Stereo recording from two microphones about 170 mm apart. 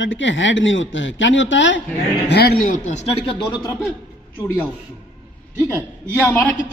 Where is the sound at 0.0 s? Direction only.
90° left.